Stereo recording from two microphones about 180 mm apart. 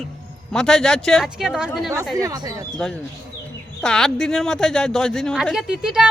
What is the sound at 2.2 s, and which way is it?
Speech, 20° right (ahead or behind).